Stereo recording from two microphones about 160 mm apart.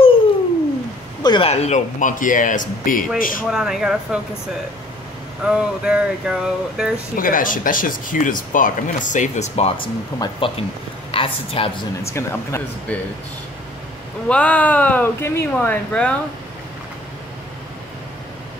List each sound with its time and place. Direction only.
1.2 s a sound: 30° left (ahead or behind)
1.5 s speech: 45° left (ahead or behind); by 3.4 s 60° left (ahead or behind)
3.4 s speech: 5° right (ahead or behind)
5.4 s speech: 5° right (ahead or behind)
7.2 s speech: 60° left (ahead or behind); by 9.8 s 45° left (ahead or behind)
10.1 s a woman's voice: 30° left (ahead or behind)
12.1 s speech: 15° left (ahead or behind)
14.3 s speech: 10° left (ahead or behind)